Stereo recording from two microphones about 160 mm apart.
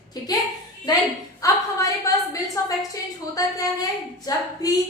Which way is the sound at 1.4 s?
20° left (ahead or behind).